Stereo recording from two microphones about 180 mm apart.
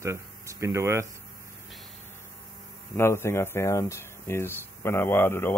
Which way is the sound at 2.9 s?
15° left (ahead or behind).